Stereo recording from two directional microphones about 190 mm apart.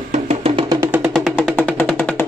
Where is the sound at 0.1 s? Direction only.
35° right (ahead or behind).